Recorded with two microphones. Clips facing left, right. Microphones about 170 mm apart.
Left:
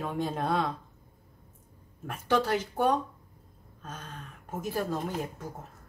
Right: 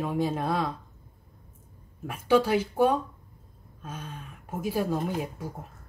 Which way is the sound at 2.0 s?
10° right (ahead or behind).